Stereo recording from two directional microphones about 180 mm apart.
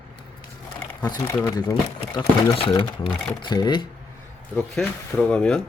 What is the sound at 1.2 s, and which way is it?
Speech, 15° left (ahead or behind).